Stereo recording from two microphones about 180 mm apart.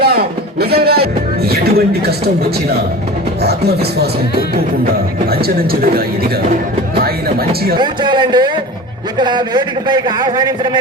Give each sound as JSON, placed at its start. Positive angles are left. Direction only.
{"t": 0.0, "sound": "music", "side_deg": -60}
{"t": 1.5, "sound": "a man's voice", "side_deg": -60}
{"t": 5.3, "sound": "a man's voice", "side_deg": -55}
{"t": 6.9, "sound": "music", "side_deg": -60}
{"t": 7.8, "sound": "a man's voice", "side_deg": -25}